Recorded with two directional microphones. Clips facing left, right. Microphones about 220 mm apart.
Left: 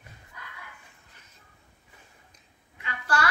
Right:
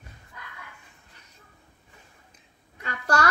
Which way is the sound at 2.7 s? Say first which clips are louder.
Right 3 dB; 40° right (ahead or behind).